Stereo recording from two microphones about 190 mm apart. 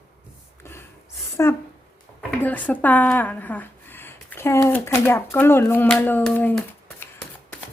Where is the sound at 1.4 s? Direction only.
15° left (ahead or behind).